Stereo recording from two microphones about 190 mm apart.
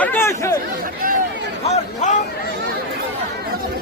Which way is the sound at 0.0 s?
10° left (ahead or behind).